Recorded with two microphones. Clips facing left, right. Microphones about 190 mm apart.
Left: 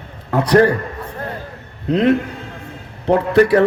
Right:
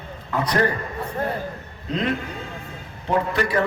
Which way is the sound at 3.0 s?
70° left (ahead or behind).